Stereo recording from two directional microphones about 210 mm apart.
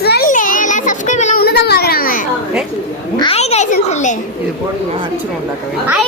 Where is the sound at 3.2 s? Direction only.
30° left (ahead or behind).